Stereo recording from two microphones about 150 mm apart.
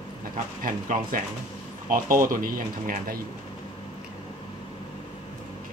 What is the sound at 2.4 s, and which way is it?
Speech, 65° right (ahead or behind).